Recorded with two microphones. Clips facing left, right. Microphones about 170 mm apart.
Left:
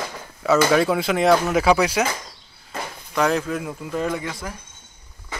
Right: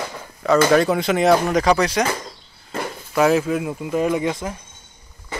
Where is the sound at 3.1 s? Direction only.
5° right (ahead or behind).